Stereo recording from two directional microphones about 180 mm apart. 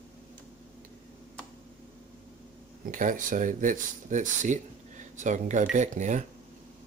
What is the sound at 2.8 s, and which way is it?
Speech, 45° right (ahead or behind).